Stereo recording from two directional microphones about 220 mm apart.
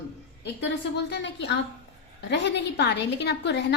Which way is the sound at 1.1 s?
50° left (ahead or behind).